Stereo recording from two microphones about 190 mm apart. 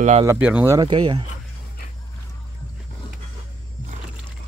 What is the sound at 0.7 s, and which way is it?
Speech, 25° right (ahead or behind).